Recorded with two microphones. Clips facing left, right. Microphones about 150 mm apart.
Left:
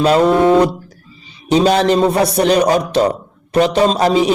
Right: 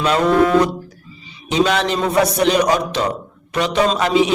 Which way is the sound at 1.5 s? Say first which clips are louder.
Left 5 dB; 35° left (ahead or behind).